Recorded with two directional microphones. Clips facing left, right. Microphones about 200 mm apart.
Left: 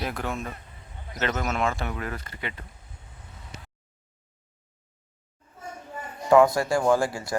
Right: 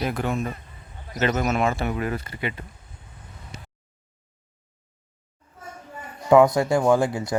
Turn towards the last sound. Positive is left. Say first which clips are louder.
# right 3 dB
turn(degrees=-20)  # may be behind; listen again after turning